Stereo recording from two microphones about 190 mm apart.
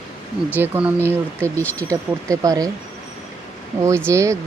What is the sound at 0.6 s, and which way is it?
Speech, 10° right (ahead or behind).